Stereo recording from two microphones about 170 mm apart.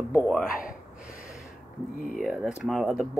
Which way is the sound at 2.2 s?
5° right (ahead or behind).